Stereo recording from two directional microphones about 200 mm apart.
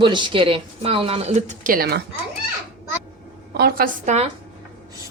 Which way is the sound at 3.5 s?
50° right (ahead or behind).